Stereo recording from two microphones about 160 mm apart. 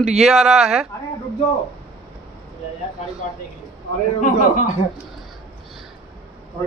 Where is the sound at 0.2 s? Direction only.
Centre (ahead or behind).